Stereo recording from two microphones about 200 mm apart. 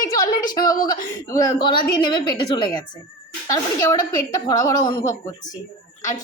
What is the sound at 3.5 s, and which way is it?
A woman's voice, 15° left (ahead or behind).